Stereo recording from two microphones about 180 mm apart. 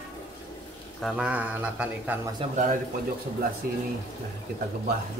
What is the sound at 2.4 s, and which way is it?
Speech, 30° right (ahead or behind).